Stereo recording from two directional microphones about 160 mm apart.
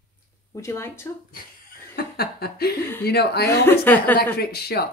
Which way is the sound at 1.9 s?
75° left (ahead or behind).